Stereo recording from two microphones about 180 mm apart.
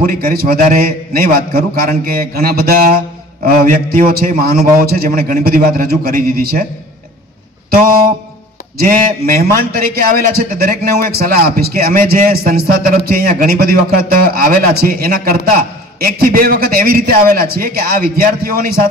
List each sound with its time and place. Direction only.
0.0 s a man's voice: 55° right (ahead or behind)
8.7 s a man's voice: 55° right (ahead or behind)